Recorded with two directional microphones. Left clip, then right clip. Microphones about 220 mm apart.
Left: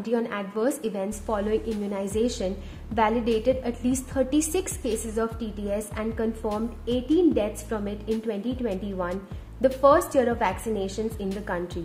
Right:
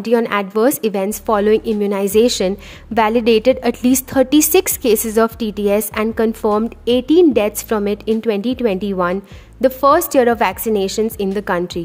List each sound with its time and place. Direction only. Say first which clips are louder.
0.0 s a woman's voice: right 12 dB; 40° right (ahead or behind)